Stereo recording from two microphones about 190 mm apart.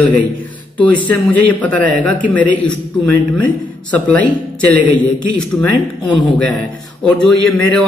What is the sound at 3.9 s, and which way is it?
Speech, 10° left (ahead or behind).